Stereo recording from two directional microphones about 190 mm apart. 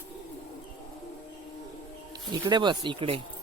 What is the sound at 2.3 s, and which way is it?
Speech, 20° right (ahead or behind).